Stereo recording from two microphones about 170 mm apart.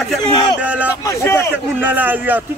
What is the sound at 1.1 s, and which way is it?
Speech, 15° left (ahead or behind).